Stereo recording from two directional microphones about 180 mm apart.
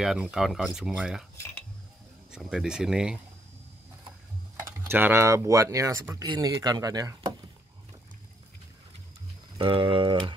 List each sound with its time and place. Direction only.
0.0 s speech: 5° right (ahead or behind)
2.3 s speech: 5° right (ahead or behind)
4.8 s speech: 10° right (ahead or behind)
9.6 s speech: 30° right (ahead or behind)